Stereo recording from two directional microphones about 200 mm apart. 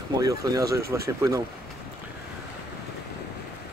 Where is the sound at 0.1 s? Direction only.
20° right (ahead or behind).